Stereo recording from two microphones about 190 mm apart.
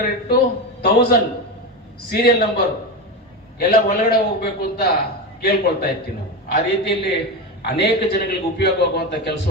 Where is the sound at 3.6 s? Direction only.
55° left (ahead or behind).